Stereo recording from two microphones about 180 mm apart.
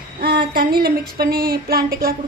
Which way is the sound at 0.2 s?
60° right (ahead or behind).